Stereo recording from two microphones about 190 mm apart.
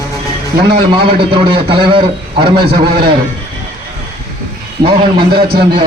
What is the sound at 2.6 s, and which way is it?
Speech, 55° right (ahead or behind).